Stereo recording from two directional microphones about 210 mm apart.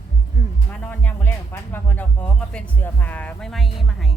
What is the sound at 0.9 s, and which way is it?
Speech, 10° left (ahead or behind).